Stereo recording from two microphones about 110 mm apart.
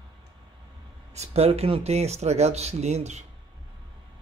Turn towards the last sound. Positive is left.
turn(degrees=-85)